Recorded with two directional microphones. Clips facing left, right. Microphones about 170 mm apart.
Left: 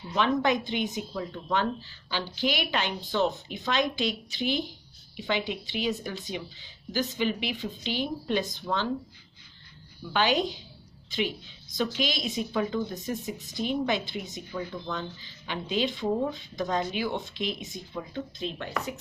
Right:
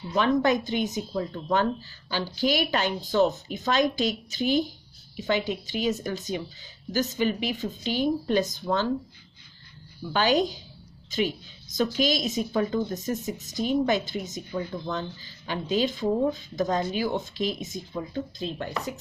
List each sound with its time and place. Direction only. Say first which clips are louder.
0.1 s speech: right 3 dB; 45° right (ahead or behind)
10.1 s speech: right 3 dB; 40° right (ahead or behind)